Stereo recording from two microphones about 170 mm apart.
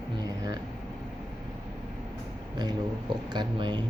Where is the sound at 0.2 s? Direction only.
20° right (ahead or behind).